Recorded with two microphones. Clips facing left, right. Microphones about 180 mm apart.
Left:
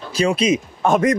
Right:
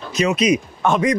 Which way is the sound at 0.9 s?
45° left (ahead or behind).